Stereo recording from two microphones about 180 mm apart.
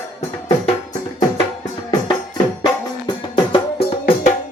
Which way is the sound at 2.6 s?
25° left (ahead or behind).